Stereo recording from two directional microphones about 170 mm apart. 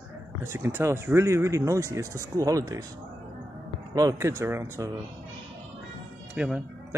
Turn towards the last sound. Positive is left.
turn(degrees=-5)  # may be behind; listen again after turning